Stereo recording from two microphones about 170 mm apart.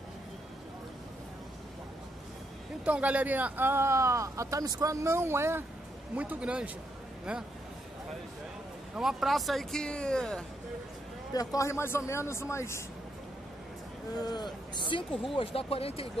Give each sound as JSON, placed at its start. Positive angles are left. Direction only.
{"t": 2.8, "sound": "a man's voice", "side_deg": -10}
{"t": 8.9, "sound": "speech", "side_deg": 0}
{"t": 11.3, "sound": "speech", "side_deg": 20}
{"t": 14.2, "sound": "speech", "side_deg": 25}